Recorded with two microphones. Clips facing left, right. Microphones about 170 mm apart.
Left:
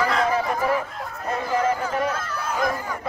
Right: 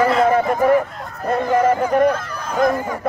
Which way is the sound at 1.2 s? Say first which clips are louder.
Right 7 dB; 55° right (ahead or behind).